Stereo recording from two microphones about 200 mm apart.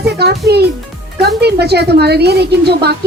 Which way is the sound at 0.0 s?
55° right (ahead or behind).